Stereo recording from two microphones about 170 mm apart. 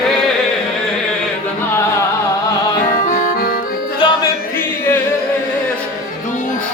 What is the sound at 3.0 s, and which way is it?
Music, 55° left (ahead or behind).